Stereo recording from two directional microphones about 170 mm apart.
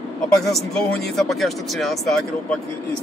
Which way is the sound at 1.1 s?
Centre (ahead or behind).